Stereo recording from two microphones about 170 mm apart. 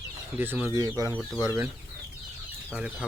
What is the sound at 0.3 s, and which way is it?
Speech, 10° right (ahead or behind).